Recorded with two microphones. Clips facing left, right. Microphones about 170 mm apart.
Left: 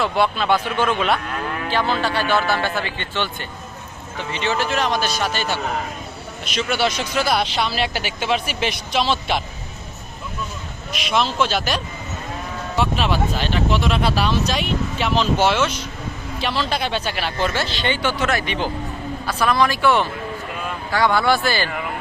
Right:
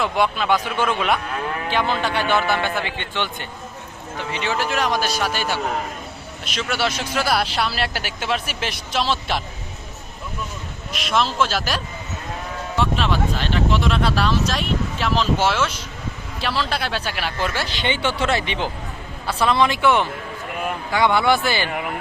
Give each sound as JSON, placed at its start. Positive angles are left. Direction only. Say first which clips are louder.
{"t": 0.0, "sound": "speech", "louder": "left 1 dB", "side_deg": -10}
{"t": 0.9, "sound": "speech", "louder": "even", "side_deg": 0}
{"t": 1.7, "sound": "speech", "louder": "left 1 dB", "side_deg": -15}
{"t": 4.3, "sound": "speech", "louder": "left 2 dB", "side_deg": -10}
{"t": 10.9, "sound": "speech", "louder": "even", "side_deg": 0}